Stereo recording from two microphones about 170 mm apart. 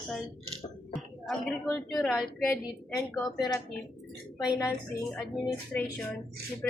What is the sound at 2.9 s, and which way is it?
Speech, 20° left (ahead or behind).